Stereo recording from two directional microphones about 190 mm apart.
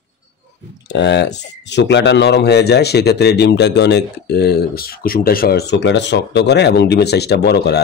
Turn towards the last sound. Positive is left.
turn(degrees=60)  # may be behind; listen again after turning